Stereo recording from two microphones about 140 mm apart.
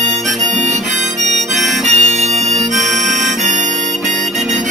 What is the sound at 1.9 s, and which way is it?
Bagpipes, 55° right (ahead or behind).